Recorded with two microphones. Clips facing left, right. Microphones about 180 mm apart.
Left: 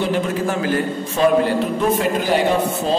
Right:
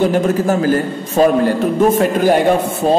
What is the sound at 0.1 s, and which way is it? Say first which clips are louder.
A man's voice: right 6 dB; 40° right (ahead or behind).